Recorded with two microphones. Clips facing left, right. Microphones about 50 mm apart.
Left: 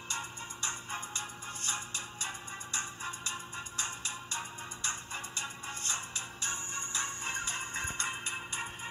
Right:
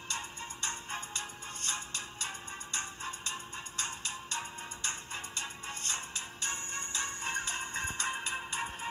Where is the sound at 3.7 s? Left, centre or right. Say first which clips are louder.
Right 1 dB; right.